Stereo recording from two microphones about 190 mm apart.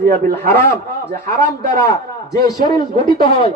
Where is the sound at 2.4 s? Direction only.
20° left (ahead or behind).